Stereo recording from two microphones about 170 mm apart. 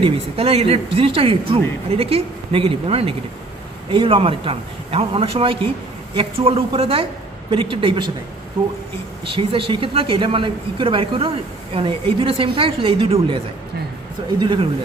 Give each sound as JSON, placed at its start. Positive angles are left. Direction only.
{"t": 0.0, "sound": "speech", "side_deg": -35}
{"t": 9.3, "sound": "speech", "side_deg": -30}